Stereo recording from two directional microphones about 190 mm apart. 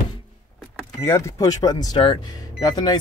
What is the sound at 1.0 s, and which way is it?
Speech, 15° left (ahead or behind).